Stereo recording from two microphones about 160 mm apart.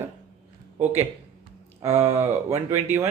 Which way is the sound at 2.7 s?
15° right (ahead or behind).